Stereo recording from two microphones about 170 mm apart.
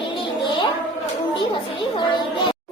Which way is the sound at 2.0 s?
30° left (ahead or behind).